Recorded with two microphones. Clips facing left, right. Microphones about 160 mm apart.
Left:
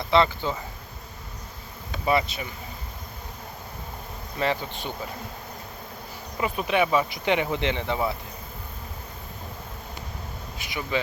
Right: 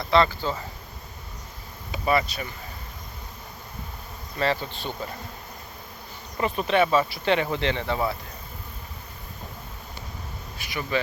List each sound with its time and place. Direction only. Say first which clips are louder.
0.0 s speech: even; 20° left (ahead or behind)
2.0 s speech: even; 20° left (ahead or behind)
4.4 s speech: right 1 dB; 15° left (ahead or behind)
6.3 s speech: right 2 dB; 10° left (ahead or behind)
10.6 s speech: right 1 dB; 20° left (ahead or behind)